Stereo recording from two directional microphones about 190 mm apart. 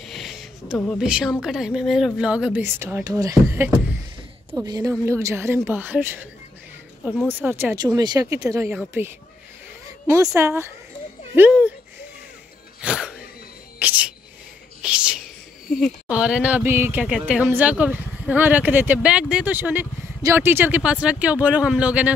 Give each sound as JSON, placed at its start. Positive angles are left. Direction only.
{"t": 0.0, "sound": "a sound", "side_deg": 0}
{"t": 0.8, "sound": "a woman's voice", "side_deg": -5}
{"t": 7.2, "sound": "speech", "side_deg": -10}
{"t": 12.8, "sound": "sneeze", "side_deg": -5}
{"t": 13.7, "sound": "music", "side_deg": -10}
{"t": 14.8, "sound": "a sound", "side_deg": -5}
{"t": 15.8, "sound": "speech", "side_deg": -5}